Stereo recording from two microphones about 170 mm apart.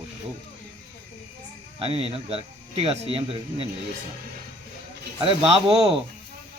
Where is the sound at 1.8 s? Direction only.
35° right (ahead or behind).